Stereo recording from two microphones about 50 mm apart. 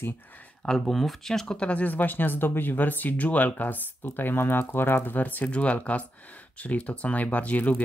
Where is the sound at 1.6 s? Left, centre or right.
Left.